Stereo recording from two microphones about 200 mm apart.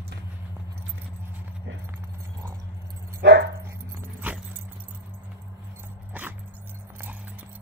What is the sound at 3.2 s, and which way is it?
Dog, 60° right (ahead or behind).